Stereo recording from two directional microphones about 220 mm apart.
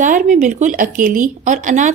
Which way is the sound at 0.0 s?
35° right (ahead or behind).